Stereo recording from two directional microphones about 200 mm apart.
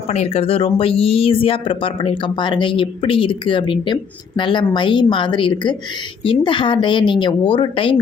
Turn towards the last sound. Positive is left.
turn(degrees=25)  # may be behind; listen again after turning